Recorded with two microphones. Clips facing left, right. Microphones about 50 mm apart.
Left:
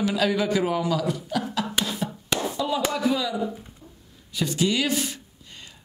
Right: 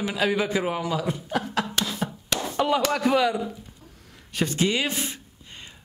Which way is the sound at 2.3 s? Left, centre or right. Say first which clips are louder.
Left 3 dB; centre.